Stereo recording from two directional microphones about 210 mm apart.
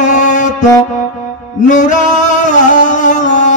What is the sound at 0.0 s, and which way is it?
Music, 35° left (ahead or behind).